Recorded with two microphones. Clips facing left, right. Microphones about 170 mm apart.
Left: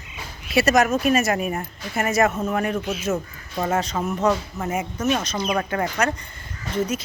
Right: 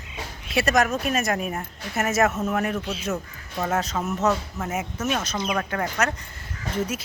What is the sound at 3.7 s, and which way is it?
Speech, centre (ahead or behind).